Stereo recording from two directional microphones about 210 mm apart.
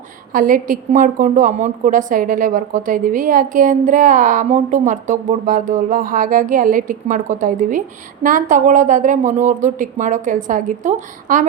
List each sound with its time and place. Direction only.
0.3 s a woman's voice: 40° right (ahead or behind)